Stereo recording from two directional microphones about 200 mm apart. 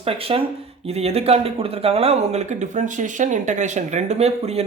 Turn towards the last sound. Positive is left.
turn(degrees=-30)  # may be behind; listen again after turning